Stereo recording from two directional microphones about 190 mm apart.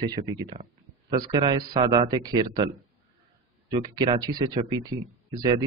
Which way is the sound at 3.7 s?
25° right (ahead or behind).